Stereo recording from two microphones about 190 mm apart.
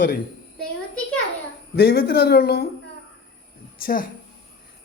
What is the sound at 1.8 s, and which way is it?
Speech, 55° left (ahead or behind).